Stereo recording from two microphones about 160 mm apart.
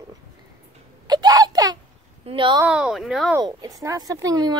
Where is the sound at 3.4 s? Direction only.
25° right (ahead or behind).